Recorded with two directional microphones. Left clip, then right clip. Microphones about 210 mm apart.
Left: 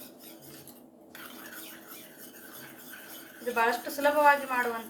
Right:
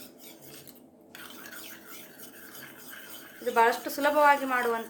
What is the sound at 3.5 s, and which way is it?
Speech, 60° right (ahead or behind).